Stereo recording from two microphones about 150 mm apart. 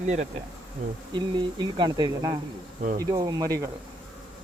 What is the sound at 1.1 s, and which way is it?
Speech, 30° right (ahead or behind).